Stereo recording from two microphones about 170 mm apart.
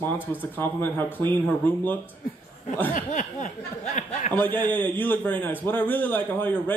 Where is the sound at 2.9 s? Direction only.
50° left (ahead or behind).